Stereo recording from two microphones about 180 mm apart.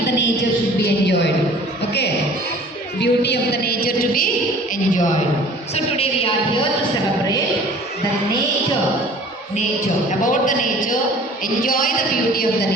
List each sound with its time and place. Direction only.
3.0 s a woman's voice: 70° left (ahead or behind)
5.7 s a woman's voice: 35° left (ahead or behind)
10.1 s speech: 45° left (ahead or behind)